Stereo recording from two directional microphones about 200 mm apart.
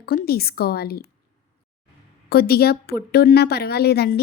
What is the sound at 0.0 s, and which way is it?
A woman's voice, 50° left (ahead or behind).